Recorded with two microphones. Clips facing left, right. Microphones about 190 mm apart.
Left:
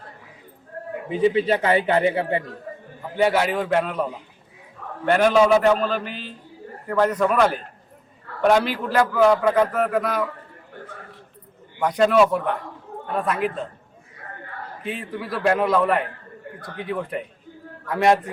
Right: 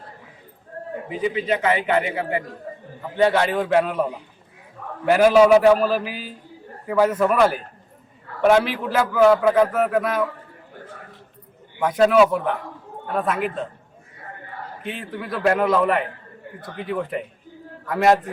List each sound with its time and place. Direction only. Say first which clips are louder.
1.1 s a man's voice: left 4 dB; 30° left (ahead or behind)
2.7 s a sound: even; 30° right (ahead or behind)
3.2 s a man's voice: right 1 dB; 5° left (ahead or behind)
11.8 s a man's voice: right 1 dB; 5° right (ahead or behind)
14.8 s a man's voice: left 1 dB; centre (ahead or behind)